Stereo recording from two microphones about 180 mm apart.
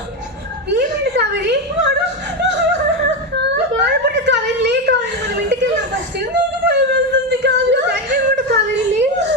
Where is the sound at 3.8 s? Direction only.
75° right (ahead or behind).